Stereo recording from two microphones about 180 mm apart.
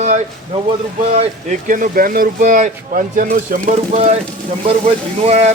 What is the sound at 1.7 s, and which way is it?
Speech, 50° right (ahead or behind).